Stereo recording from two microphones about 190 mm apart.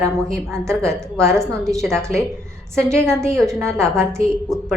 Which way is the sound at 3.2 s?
15° right (ahead or behind).